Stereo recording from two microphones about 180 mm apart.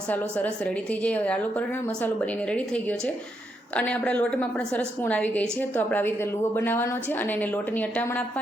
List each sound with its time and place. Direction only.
0.1 s a woman's voice: 10° left (ahead or behind)